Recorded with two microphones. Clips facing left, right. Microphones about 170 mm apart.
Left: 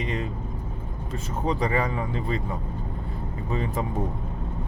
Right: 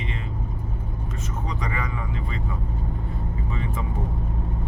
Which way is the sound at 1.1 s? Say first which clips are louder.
Left 7 dB; 30° left (ahead or behind).